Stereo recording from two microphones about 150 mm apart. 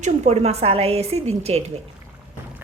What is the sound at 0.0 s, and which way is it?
A woman's voice, 45° right (ahead or behind).